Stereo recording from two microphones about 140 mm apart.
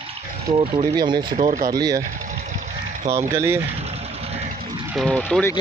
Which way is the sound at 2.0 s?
70° right (ahead or behind).